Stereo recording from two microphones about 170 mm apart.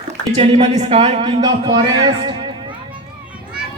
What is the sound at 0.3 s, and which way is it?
Speech, 40° right (ahead or behind).